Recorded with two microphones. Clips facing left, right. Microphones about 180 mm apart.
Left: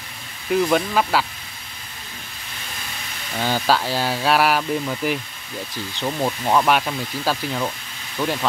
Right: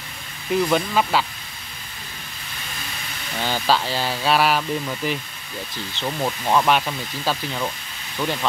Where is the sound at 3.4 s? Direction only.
10° left (ahead or behind).